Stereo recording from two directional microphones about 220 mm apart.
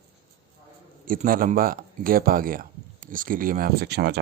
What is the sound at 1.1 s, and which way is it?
Speech, 40° right (ahead or behind).